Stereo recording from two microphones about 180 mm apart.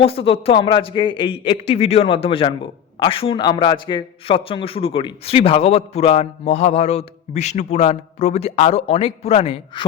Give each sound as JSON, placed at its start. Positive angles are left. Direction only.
{"t": 0.0, "sound": "a man's voice", "side_deg": 30}